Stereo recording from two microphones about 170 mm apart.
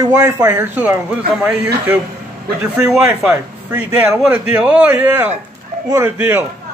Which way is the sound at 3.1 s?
5° right (ahead or behind).